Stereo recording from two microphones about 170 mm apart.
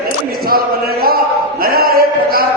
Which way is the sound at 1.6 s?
60° right (ahead or behind).